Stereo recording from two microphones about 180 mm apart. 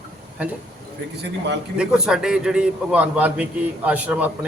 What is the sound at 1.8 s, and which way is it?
A man's voice, 5° right (ahead or behind).